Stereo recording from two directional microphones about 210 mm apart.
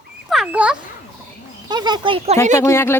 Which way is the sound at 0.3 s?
5° right (ahead or behind).